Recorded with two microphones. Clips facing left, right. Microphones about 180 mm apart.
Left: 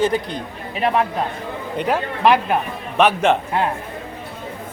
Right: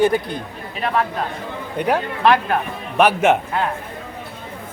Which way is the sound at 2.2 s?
10° left (ahead or behind).